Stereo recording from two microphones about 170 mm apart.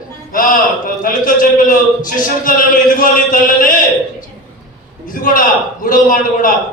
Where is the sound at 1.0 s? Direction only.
55° left (ahead or behind).